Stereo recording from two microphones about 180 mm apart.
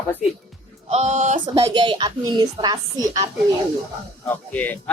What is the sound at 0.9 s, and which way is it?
Speech, 40° right (ahead or behind).